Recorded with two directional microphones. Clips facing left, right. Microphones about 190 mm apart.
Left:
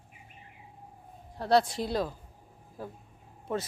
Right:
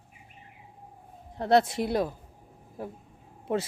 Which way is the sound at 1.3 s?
20° right (ahead or behind).